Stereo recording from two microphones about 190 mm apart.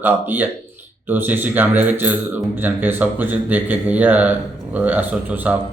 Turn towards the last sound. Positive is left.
turn(degrees=-10)  # may be behind; listen again after turning